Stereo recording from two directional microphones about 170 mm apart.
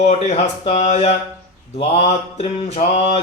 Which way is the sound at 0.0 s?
40° left (ahead or behind).